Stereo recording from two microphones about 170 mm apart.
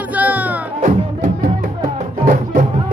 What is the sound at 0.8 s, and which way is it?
Music, 45° right (ahead or behind).